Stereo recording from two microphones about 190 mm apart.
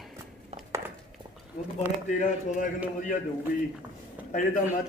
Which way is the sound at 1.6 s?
45° left (ahead or behind).